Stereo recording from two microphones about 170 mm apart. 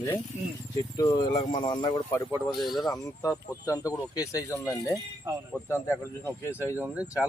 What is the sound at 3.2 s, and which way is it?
Speech, 20° left (ahead or behind).